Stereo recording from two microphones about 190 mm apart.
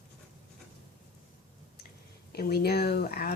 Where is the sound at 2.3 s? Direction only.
55° left (ahead or behind).